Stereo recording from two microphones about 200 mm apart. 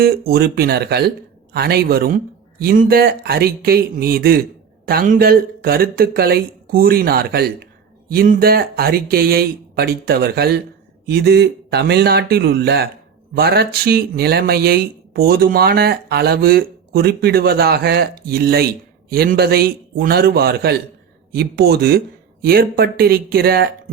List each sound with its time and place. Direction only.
0.0 s speech: 50° right (ahead or behind)